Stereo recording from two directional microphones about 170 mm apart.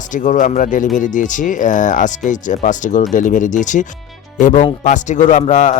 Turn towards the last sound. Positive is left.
turn(degrees=45)  # may be behind; listen again after turning